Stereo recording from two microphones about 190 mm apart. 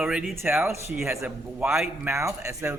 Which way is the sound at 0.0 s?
5° right (ahead or behind).